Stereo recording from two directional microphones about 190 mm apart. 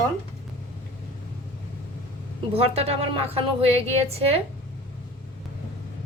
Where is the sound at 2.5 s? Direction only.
30° right (ahead or behind).